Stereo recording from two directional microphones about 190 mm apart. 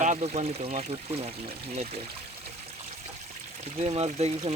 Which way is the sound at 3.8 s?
35° right (ahead or behind).